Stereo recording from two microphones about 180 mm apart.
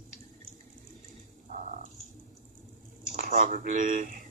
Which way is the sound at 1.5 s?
40° right (ahead or behind).